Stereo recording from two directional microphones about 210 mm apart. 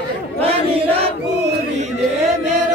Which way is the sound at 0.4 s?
30° right (ahead or behind).